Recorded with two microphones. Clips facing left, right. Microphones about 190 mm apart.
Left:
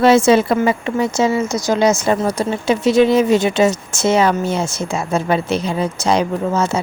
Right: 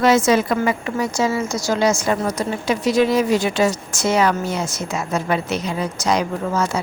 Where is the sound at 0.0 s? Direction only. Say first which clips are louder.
Left 4 dB; 30° left (ahead or behind).